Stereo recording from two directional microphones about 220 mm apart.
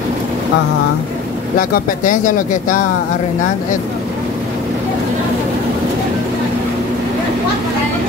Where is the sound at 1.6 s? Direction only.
35° left (ahead or behind).